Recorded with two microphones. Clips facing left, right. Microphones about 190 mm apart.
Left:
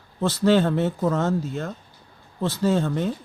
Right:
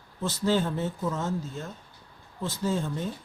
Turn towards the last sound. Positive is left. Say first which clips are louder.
# left 7 dB
turn(degrees=75)  # may be behind; listen again after turning